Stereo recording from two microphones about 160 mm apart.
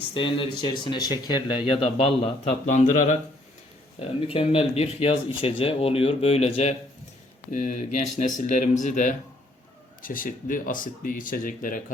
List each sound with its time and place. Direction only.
0.1 s speech: 30° left (ahead or behind)
2.4 s speech: 50° left (ahead or behind)
4.3 s speech: 35° left (ahead or behind)
7.5 s speech: 55° left (ahead or behind)